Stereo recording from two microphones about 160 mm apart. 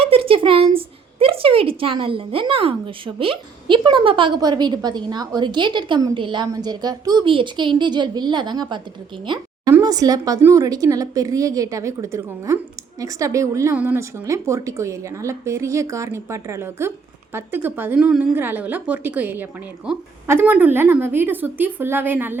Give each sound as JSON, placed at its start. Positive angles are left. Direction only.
{"t": 0.0, "sound": "a woman's voice", "side_deg": -35}